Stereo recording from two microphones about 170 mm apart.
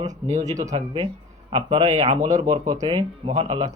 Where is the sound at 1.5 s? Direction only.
35° right (ahead or behind).